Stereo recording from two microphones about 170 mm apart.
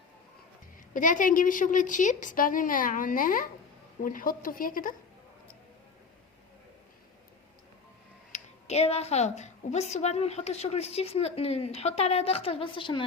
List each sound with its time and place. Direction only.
0.9 s a woman's voice: 50° left (ahead or behind)
8.3 s speech: 40° left (ahead or behind)